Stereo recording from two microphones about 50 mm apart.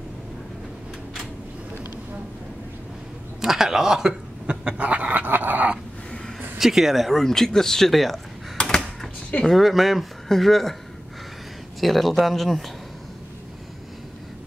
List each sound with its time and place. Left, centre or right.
3.3 s speech: centre; by 5.7 s right
6.6 s speech: centre
8.5 s typewriter: centre
9.4 s speech: centre
11.8 s speech: centre